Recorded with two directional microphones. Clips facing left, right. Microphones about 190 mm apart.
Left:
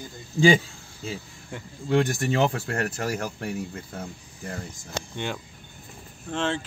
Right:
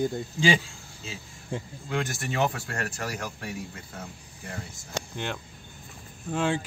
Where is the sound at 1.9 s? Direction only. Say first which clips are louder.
Left 8 dB; 30° left (ahead or behind).